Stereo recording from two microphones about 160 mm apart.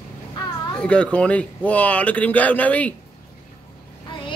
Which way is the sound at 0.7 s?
5° left (ahead or behind).